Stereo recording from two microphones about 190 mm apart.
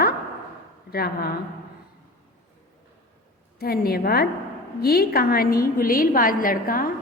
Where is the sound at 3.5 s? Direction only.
50° left (ahead or behind).